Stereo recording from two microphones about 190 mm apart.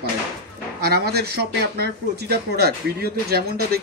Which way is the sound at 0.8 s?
55° right (ahead or behind).